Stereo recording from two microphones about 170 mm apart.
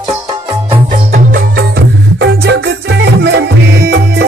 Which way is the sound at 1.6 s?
80° right.